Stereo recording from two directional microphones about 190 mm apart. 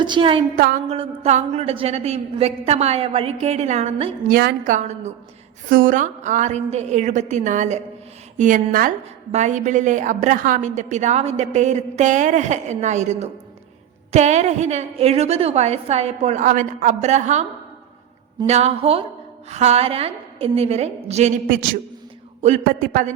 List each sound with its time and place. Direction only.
0.0 s a woman's voice: 25° right (ahead or behind)
0.5 s a woman's voice: 50° right (ahead or behind)
0.9 s a woman's voice: 30° right (ahead or behind)
4.3 s a woman's voice: 55° right (ahead or behind)
4.7 s a woman's voice: 35° right (ahead or behind)
18.4 s a woman's voice: 35° right (ahead or behind)
22.6 s a woman's voice: 50° right (ahead or behind)